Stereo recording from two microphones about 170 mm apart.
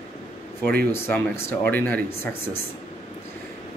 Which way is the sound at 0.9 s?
15° left (ahead or behind).